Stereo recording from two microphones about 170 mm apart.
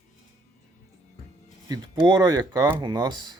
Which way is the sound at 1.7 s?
25° right (ahead or behind).